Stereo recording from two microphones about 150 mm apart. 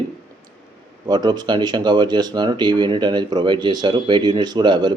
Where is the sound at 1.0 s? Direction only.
30° right (ahead or behind).